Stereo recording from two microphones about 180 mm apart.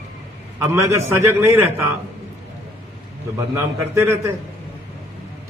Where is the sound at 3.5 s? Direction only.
15° right (ahead or behind).